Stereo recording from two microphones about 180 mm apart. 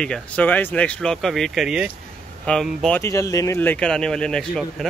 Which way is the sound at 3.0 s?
15° left (ahead or behind).